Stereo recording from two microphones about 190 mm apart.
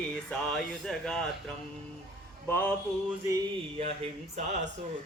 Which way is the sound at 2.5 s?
10° left (ahead or behind).